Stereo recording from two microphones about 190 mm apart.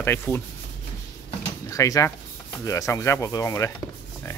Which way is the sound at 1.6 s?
15° left (ahead or behind).